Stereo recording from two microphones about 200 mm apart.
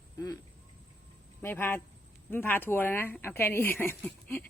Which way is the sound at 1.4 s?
10° left (ahead or behind).